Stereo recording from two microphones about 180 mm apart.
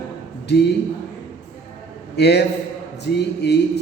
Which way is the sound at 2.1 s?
65° left (ahead or behind).